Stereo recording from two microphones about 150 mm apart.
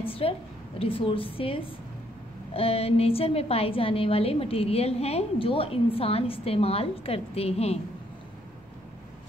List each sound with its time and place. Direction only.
0.1 s a woman's voice: 40° left (ahead or behind)